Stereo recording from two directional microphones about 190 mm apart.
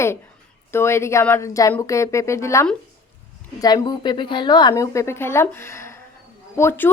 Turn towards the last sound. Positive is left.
turn(degrees=10)  # may be behind; listen again after turning